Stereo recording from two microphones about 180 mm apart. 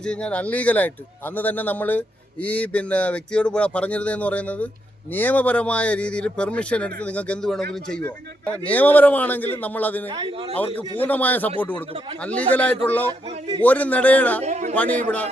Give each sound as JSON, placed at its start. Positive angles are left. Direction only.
{"t": 0.0, "sound": "speech", "side_deg": 5}
{"t": 10.1, "sound": "a man's voice", "side_deg": -25}
{"t": 10.5, "sound": "speech", "side_deg": 10}
{"t": 14.4, "sound": "speech", "side_deg": -40}
{"t": 14.8, "sound": "speech", "side_deg": 10}